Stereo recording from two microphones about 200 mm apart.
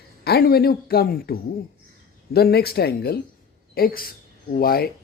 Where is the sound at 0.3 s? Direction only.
50° left (ahead or behind).